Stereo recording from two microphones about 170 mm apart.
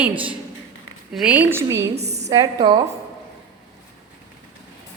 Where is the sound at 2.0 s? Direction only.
40° right (ahead or behind).